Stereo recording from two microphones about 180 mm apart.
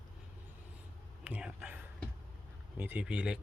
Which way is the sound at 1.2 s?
5° right (ahead or behind).